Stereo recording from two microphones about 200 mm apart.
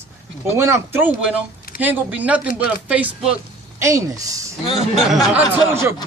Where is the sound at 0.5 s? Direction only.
15° right (ahead or behind).